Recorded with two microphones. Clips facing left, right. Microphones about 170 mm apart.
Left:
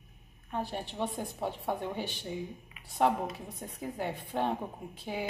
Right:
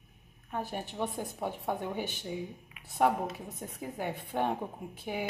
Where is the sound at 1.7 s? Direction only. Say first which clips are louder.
Right 1 dB; 15° right (ahead or behind).